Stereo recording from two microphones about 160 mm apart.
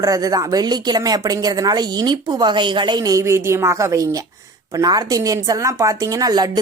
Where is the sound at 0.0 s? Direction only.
20° right (ahead or behind).